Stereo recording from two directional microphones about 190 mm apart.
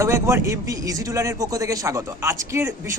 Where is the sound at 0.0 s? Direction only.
15° right (ahead or behind).